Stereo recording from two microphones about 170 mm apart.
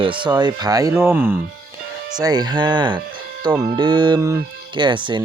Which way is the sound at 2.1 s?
25° right (ahead or behind).